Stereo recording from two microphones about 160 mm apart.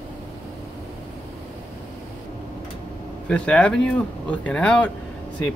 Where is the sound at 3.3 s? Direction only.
5° left (ahead or behind).